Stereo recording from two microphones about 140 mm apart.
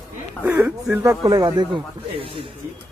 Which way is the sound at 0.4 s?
15° right (ahead or behind).